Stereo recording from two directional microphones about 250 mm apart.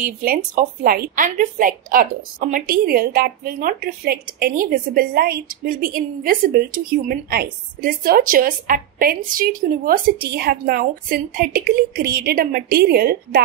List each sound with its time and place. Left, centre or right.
0.6 s a woman's voice: right